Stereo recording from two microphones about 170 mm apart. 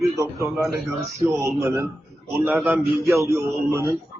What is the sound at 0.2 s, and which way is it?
A man's voice, 20° right (ahead or behind).